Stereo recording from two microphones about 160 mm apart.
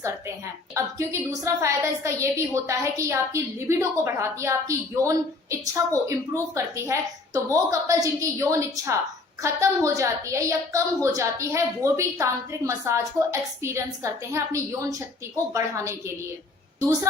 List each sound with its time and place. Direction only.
0.0 s a woman's voice: 20° right (ahead or behind)